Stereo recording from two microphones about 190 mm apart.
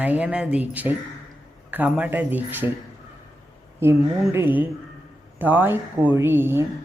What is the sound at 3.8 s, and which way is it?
Speech, 10° right (ahead or behind).